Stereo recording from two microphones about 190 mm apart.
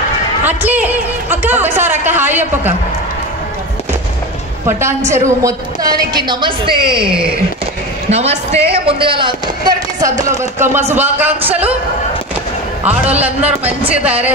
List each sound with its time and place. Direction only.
0.4 s speech: 10° right (ahead or behind)
4.6 s a woman's voice: 15° right (ahead or behind)
8.1 s a man's voice: 35° right (ahead or behind); by 11.7 s 10° right (ahead or behind)
13.2 s speech: 10° right (ahead or behind)